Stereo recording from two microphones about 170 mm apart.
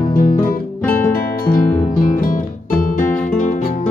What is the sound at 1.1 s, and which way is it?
Music, 60° left (ahead or behind).